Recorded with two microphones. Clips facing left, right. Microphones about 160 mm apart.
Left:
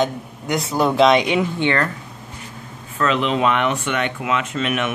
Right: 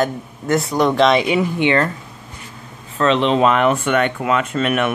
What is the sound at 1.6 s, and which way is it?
Speech, 20° right (ahead or behind).